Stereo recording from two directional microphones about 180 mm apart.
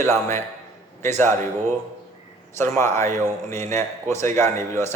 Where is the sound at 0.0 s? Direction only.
15° left (ahead or behind).